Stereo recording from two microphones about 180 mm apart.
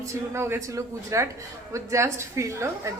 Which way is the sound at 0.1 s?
15° right (ahead or behind).